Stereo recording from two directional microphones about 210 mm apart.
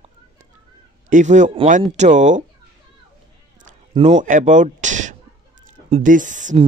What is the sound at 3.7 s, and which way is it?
Speech, 35° right (ahead or behind).